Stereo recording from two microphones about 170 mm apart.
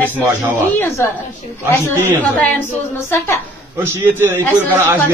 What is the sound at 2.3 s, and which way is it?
A woman's voice, 10° left (ahead or behind).